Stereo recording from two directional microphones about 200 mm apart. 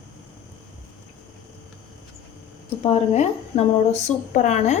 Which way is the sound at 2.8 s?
30° left (ahead or behind).